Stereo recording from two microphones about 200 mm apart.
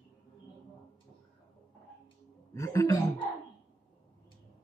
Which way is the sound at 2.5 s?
15° left (ahead or behind).